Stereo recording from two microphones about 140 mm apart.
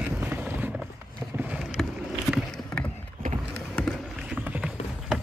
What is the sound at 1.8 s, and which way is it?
Vehicle, 5° left (ahead or behind).